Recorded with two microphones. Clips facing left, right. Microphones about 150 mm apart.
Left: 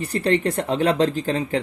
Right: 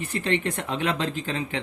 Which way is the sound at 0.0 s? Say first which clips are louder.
Left 5 dB; 40° left (ahead or behind).